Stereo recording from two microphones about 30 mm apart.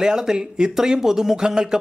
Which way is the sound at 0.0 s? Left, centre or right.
Right.